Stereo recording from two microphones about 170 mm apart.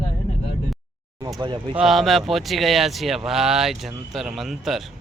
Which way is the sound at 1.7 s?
Centre (ahead or behind).